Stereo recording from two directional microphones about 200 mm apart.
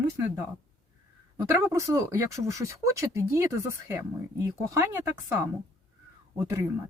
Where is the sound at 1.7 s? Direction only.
15° right (ahead or behind).